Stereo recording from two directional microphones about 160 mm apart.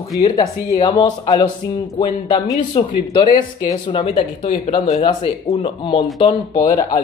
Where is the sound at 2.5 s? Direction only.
30° left (ahead or behind).